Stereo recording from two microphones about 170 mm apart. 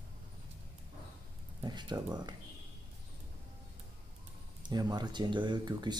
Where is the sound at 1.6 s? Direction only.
25° right (ahead or behind).